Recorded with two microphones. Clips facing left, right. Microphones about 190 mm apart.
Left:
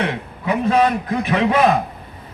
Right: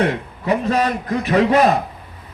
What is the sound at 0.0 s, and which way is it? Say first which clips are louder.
A man's voice: right 3 dB; 40° right (ahead or behind).